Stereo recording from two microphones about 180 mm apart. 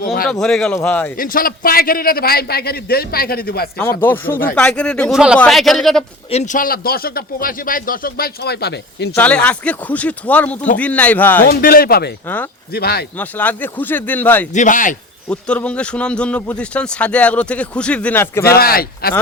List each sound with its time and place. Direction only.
0.0 s speech: 55° left (ahead or behind)
0.3 s a man's voice: 5° left (ahead or behind)
1.1 s speech: 50° left (ahead or behind)
3.8 s a man's voice: 10° left (ahead or behind)
6.3 s speech: 45° left (ahead or behind); by 9.1 s 65° left (ahead or behind)
9.1 s a man's voice: 5° left (ahead or behind)
11.4 s speech: 55° left (ahead or behind)
13.1 s a man's voice: 10° left (ahead or behind)
14.5 s speech: 45° left (ahead or behind)
15.3 s a man's voice: 5° left (ahead or behind)
18.4 s speech: 55° left (ahead or behind)